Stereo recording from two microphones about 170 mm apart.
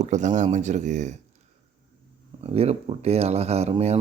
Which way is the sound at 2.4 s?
35° right (ahead or behind).